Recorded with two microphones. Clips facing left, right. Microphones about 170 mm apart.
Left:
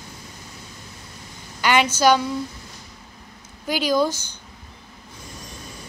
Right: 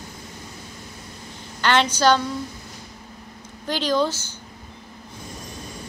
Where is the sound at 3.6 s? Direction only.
10° left (ahead or behind).